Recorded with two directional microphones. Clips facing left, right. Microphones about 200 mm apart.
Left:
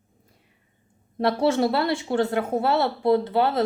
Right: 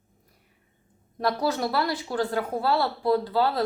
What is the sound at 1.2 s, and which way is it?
Speech, 25° left (ahead or behind).